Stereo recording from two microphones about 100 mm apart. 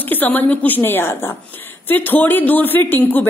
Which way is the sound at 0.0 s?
20° left (ahead or behind).